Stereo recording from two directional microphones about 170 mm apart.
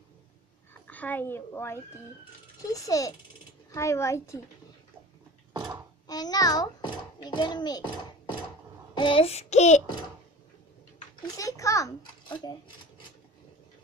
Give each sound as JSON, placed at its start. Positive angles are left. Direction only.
{"t": 0.8, "sound": "a child's voice", "side_deg": 10}
{"t": 6.0, "sound": "a child's voice", "side_deg": 20}
{"t": 8.9, "sound": "child singing", "side_deg": 30}
{"t": 11.3, "sound": "a child's voice", "side_deg": 20}